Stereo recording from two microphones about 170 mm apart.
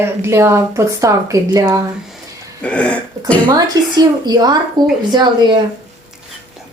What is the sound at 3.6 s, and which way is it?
Speech, 25° right (ahead or behind).